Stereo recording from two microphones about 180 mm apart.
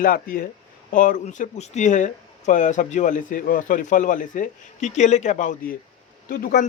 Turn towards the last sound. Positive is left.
turn(degrees=55)  # may be behind; listen again after turning